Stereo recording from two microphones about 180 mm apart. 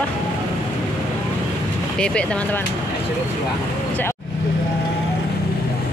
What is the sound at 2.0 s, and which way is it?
Speech, 5° left (ahead or behind).